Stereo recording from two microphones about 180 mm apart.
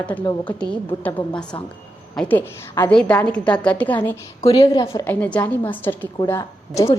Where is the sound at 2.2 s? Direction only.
10° left (ahead or behind).